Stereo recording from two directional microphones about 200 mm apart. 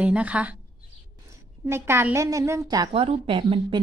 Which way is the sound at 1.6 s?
10° right (ahead or behind).